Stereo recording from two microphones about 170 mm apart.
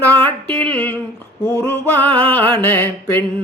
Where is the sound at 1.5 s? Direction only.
15° left (ahead or behind).